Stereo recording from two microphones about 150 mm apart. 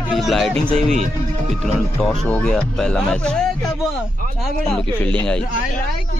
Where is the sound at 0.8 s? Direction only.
50° right (ahead or behind).